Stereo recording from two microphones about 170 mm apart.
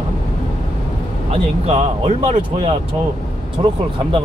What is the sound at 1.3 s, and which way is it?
Speech, 35° right (ahead or behind).